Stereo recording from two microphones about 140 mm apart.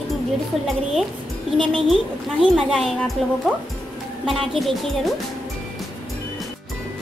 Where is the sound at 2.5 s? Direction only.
5° left (ahead or behind).